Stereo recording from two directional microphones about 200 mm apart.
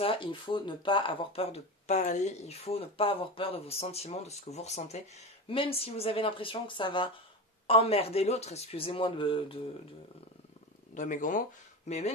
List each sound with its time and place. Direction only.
0.0 s speech: 25° left (ahead or behind)
11.0 s speech: 40° left (ahead or behind)